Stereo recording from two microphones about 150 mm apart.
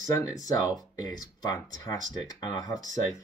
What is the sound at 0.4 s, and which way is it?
Speech, 25° left (ahead or behind).